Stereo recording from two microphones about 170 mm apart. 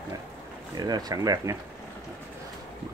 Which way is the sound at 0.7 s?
25° right (ahead or behind).